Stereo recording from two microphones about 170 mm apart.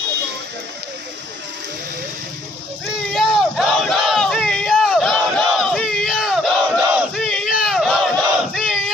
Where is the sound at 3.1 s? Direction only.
Centre (ahead or behind).